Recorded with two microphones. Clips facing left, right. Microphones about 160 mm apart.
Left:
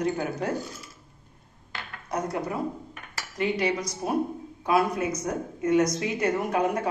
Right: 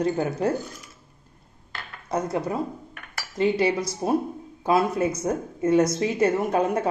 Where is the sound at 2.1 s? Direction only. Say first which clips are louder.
Right 3 dB; 25° right (ahead or behind).